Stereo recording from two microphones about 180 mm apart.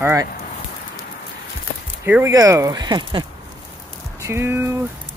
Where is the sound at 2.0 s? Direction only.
15° right (ahead or behind).